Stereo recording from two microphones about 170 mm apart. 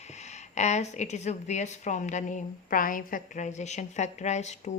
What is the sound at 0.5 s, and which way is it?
A woman's voice, 45° left (ahead or behind).